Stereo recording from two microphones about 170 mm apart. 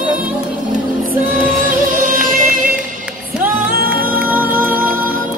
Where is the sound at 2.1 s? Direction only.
55° right (ahead or behind).